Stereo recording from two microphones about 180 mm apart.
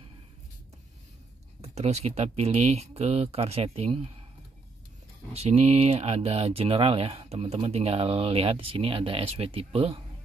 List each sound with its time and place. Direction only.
1.6 s speech: 35° right (ahead or behind)
5.3 s speech: 35° right (ahead or behind)